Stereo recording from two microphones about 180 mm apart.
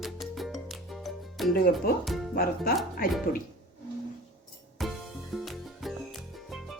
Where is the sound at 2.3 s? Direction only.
60° left (ahead or behind).